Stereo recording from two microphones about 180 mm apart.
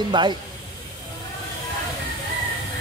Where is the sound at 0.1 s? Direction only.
25° right (ahead or behind).